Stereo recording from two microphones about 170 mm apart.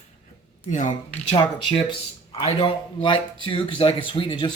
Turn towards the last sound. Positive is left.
turn(degrees=30)  # may be behind; listen again after turning